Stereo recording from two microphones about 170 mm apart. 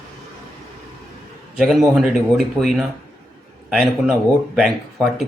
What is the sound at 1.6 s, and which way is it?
Speech, centre (ahead or behind).